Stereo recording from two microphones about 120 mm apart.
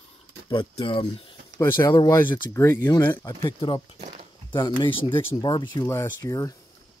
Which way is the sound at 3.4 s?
45° left (ahead or behind).